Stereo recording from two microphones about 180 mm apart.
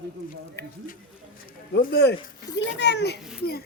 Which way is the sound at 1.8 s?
60° left (ahead or behind).